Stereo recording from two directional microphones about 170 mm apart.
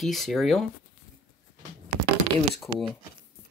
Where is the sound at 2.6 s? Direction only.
Centre (ahead or behind).